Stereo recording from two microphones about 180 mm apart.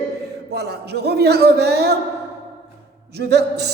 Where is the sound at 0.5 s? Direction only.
65° right (ahead or behind).